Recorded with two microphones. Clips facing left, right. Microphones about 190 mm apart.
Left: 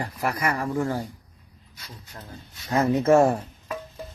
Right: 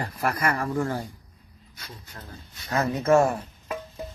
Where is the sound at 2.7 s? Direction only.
25° left (ahead or behind).